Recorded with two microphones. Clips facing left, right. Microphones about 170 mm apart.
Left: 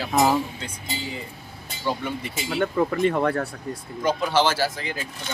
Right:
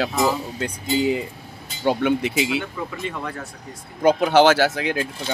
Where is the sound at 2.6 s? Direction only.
55° left (ahead or behind).